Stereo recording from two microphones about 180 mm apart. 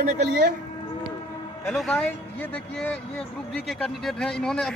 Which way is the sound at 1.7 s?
5° left (ahead or behind).